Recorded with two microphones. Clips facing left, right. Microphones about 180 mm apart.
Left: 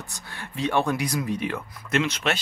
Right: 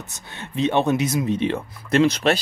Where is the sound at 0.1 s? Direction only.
20° right (ahead or behind).